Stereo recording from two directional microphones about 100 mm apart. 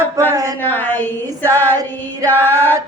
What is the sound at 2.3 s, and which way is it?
Music, 20° left (ahead or behind).